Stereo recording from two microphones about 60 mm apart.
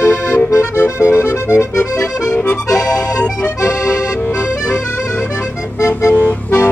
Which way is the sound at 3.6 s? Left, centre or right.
Left.